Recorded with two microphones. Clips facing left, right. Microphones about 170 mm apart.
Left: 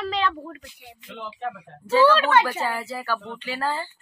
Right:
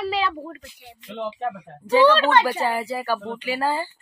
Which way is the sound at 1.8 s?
15° right (ahead or behind).